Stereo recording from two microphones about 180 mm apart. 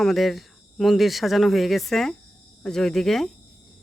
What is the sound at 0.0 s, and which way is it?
Speech, centre (ahead or behind).